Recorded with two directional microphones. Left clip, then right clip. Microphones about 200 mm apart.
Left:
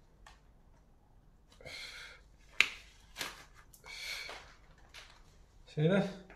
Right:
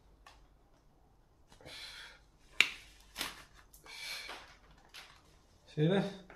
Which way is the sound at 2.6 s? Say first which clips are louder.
Even; centre (ahead or behind).